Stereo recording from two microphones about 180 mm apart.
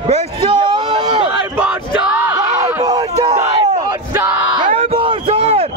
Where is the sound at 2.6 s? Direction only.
20° right (ahead or behind).